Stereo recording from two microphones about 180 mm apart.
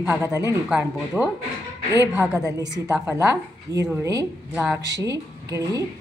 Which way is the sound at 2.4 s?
20° right (ahead or behind).